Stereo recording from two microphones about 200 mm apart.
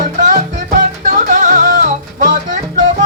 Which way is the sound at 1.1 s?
40° right (ahead or behind).